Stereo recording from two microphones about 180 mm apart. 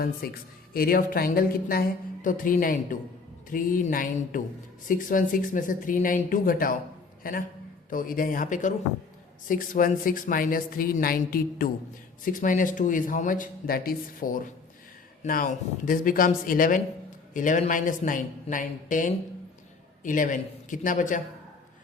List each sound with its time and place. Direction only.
0.0 s a woman's voice: 55° left (ahead or behind)